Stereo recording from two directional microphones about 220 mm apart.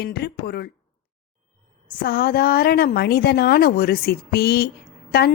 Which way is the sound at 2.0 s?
45° left (ahead or behind).